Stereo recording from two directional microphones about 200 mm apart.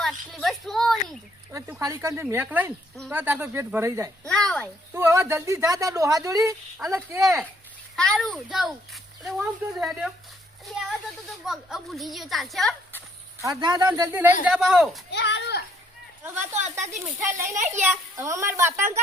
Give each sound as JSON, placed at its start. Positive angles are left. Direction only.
{"t": 0.0, "sound": "a sound", "side_deg": 0}
{"t": 1.5, "sound": "speech", "side_deg": -15}
{"t": 4.3, "sound": "a child's voice", "side_deg": 5}
{"t": 4.6, "sound": "speech", "side_deg": -15}
{"t": 7.9, "sound": "a child's voice", "side_deg": 5}
{"t": 11.4, "sound": "a child's voice", "side_deg": 0}
{"t": 13.4, "sound": "a child's voice", "side_deg": -20}
{"t": 15.1, "sound": "a sound", "side_deg": 60}
{"t": 16.2, "sound": "speech", "side_deg": -10}
{"t": 16.6, "sound": "speech", "side_deg": -35}
{"t": 18.2, "sound": "speech", "side_deg": -15}